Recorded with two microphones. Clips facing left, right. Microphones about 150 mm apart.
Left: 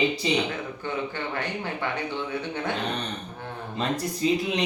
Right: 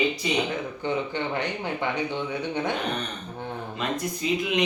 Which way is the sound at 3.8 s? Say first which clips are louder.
Left 3 dB; 35° left (ahead or behind).